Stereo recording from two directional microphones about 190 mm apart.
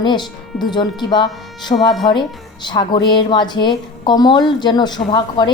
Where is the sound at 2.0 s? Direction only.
25° left (ahead or behind).